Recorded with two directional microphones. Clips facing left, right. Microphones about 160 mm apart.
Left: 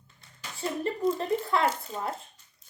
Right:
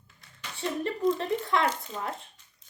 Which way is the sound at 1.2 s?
35° left (ahead or behind).